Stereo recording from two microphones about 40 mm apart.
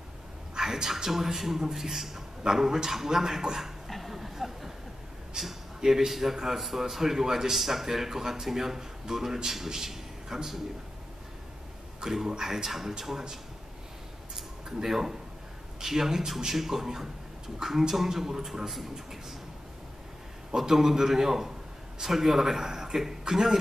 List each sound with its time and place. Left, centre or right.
0.6 s a man's voice: centre
3.9 s a sound: centre
5.4 s a man's voice: centre
12.0 s a man's voice: centre
14.3 s a sound: centre
15.8 s a man's voice: centre
20.5 s a man's voice: centre